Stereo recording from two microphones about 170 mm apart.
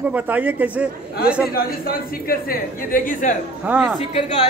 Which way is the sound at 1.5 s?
60° left (ahead or behind).